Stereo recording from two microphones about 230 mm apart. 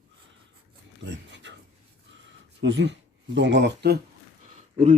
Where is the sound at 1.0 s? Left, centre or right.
Right.